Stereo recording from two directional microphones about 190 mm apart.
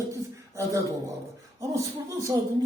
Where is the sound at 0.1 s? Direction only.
15° right (ahead or behind).